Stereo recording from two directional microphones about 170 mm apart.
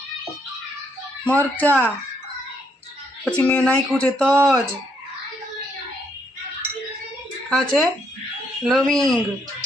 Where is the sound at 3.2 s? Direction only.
10° left (ahead or behind).